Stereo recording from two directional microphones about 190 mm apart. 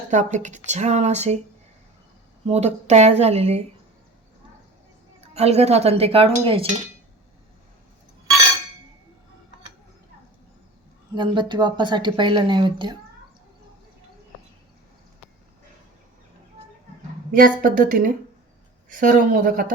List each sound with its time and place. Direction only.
0.1 s speech: 40° right (ahead or behind)
2.5 s speech: 35° right (ahead or behind)
5.3 s speech: 35° right (ahead or behind)
11.1 s speech: 25° right (ahead or behind)
17.3 s speech: 50° right (ahead or behind)